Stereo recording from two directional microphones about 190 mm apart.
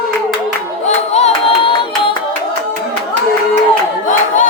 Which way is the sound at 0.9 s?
35° left (ahead or behind).